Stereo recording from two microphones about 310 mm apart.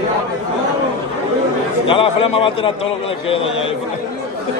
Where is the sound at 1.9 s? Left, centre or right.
Centre.